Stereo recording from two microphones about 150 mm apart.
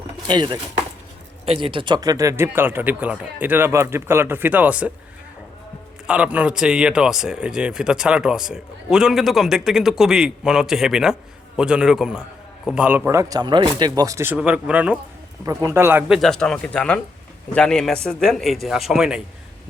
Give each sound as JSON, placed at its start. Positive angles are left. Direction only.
{"t": 0.3, "sound": "speech", "side_deg": -30}
{"t": 6.1, "sound": "a man's voice", "side_deg": -10}
{"t": 15.4, "sound": "a man's voice", "side_deg": -20}